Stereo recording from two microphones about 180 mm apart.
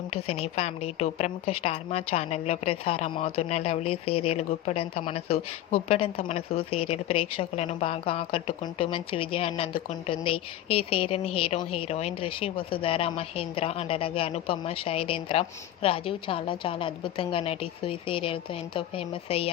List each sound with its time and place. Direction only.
0.1 s a woman's voice: 35° left (ahead or behind)